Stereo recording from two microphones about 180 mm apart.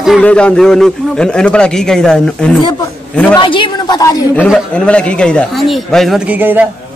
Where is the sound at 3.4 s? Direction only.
25° left (ahead or behind).